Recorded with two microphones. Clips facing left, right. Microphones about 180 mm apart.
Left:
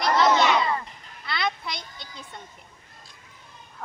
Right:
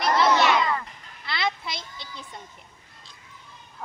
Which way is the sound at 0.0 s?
Centre (ahead or behind).